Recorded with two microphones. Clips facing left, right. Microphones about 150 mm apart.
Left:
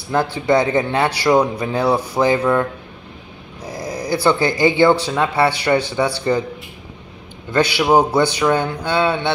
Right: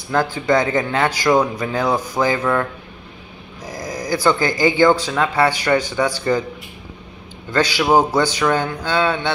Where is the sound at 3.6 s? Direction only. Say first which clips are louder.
Left 2 dB; 30° left (ahead or behind).